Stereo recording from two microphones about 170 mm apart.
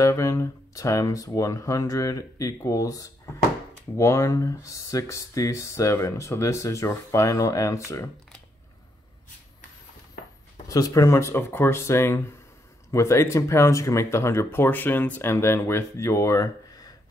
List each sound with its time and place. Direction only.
0.0 s speech: 20° left (ahead or behind)
10.7 s speech: 20° left (ahead or behind)